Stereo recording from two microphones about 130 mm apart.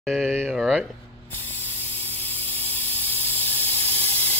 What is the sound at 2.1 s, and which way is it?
Hiss, 50° right (ahead or behind).